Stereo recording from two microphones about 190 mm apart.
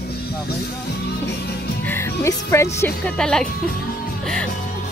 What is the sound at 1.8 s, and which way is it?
Music, 15° left (ahead or behind).